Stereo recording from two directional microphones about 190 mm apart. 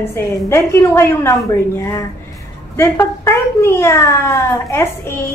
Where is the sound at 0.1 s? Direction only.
15° left (ahead or behind).